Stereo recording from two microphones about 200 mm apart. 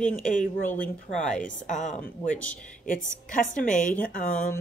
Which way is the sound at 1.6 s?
35° left (ahead or behind).